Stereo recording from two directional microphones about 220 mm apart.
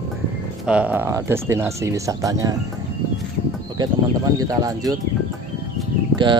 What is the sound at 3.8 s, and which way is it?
Speech, 15° right (ahead or behind).